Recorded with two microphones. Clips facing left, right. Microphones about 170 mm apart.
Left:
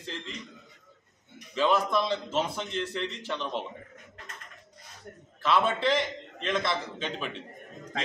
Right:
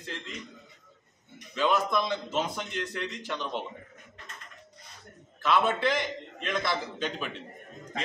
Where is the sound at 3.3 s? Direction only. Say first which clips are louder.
Even; centre (ahead or behind).